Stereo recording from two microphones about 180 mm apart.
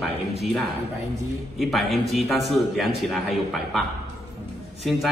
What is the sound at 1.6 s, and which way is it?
A man's voice, centre (ahead or behind).